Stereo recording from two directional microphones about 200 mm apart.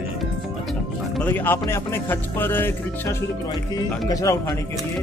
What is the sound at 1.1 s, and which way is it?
A man's voice, 10° left (ahead or behind).